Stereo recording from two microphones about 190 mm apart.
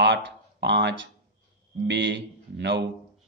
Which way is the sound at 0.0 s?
65° right (ahead or behind).